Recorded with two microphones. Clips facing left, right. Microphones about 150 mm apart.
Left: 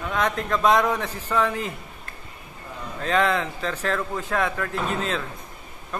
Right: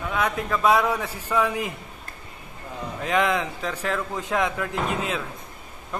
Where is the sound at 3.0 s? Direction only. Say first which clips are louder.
Left 1 dB; 15° right (ahead or behind).